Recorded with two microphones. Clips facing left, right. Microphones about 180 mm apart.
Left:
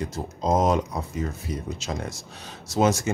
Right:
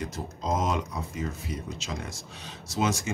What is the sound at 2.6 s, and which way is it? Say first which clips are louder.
Speech: left 6 dB; 45° left (ahead or behind).